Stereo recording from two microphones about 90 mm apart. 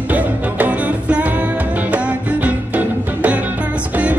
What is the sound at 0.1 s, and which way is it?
Music, 15° right (ahead or behind).